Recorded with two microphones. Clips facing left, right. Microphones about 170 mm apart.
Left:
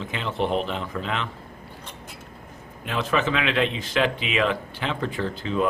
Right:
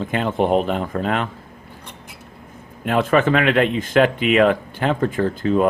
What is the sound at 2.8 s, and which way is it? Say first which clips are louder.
Speech: right 8 dB; 50° right (ahead or behind).